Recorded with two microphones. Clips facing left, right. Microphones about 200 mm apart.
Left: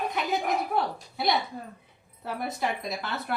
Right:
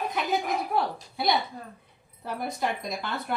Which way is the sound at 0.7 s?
Centre (ahead or behind).